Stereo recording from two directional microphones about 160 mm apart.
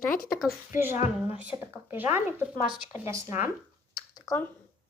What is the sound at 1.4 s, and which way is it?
Speech, 10° right (ahead or behind).